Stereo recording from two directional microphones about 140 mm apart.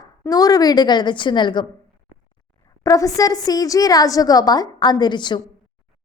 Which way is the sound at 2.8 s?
25° left (ahead or behind).